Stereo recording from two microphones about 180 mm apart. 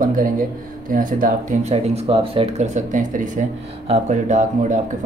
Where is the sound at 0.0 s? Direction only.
50° right (ahead or behind).